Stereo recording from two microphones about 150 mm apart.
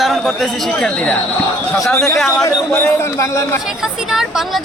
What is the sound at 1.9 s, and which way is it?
A man's voice, 20° left (ahead or behind).